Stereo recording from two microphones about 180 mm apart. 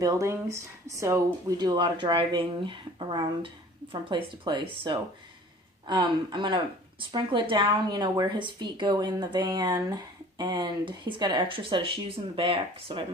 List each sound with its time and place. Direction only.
0.0 s a woman's voice: 20° right (ahead or behind)